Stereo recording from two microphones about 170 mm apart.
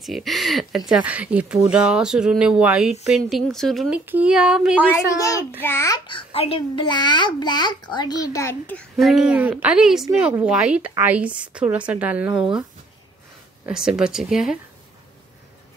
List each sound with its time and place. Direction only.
0.0 s speech: centre (ahead or behind)
4.0 s speech: 10° right (ahead or behind)
4.8 s speech: 15° left (ahead or behind)
5.9 s a child's voice: 30° left (ahead or behind); by 12.6 s 5° right (ahead or behind)
13.7 s speech: 5° right (ahead or behind)